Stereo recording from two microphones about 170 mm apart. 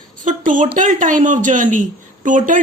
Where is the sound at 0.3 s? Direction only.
50° right (ahead or behind).